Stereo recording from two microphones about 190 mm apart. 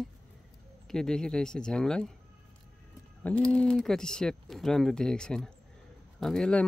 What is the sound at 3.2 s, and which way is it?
Speech, 5° left (ahead or behind).